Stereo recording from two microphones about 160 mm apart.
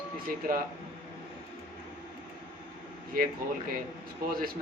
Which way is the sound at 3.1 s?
60° right (ahead or behind).